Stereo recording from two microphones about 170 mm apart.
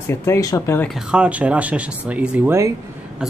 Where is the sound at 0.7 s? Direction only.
Centre (ahead or behind).